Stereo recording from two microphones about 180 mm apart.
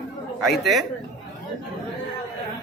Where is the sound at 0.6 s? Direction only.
Centre (ahead or behind).